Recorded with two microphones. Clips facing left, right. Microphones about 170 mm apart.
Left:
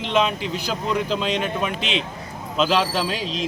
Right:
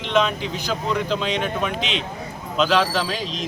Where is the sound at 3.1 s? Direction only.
40° right (ahead or behind).